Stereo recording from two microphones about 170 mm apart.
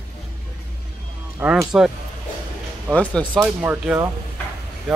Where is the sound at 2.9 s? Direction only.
10° left (ahead or behind).